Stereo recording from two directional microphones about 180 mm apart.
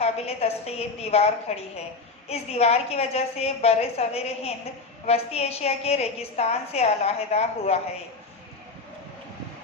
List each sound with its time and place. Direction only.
0.0 s a woman's voice: 35° left (ahead or behind)